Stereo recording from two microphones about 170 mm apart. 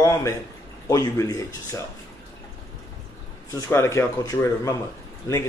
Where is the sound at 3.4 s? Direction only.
20° left (ahead or behind).